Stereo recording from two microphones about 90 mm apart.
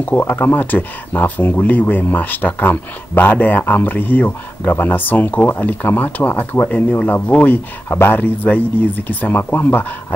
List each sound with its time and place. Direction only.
0.0 s speech: 20° left (ahead or behind)
7.9 s speech: 30° left (ahead or behind)
8.2 s speech: 20° left (ahead or behind)